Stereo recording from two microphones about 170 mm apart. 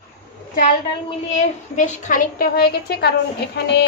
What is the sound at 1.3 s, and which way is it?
A woman's voice, 45° left (ahead or behind).